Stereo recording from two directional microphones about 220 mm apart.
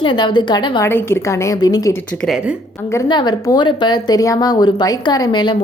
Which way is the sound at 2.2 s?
5° right (ahead or behind).